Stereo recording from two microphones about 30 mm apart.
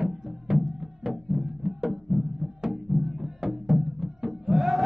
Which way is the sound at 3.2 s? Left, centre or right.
Centre.